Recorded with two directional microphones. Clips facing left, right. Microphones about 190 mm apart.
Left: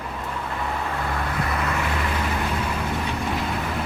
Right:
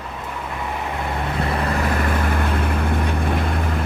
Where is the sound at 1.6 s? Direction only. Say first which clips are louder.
Right 4 dB; 35° right (ahead or behind); by 3.6 s 55° right (ahead or behind).